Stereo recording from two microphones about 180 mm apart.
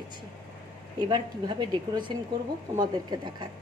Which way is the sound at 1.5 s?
25° right (ahead or behind).